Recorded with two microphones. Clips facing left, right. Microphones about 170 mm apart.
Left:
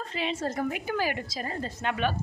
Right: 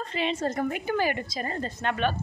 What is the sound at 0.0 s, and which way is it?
A woman's voice, 5° left (ahead or behind).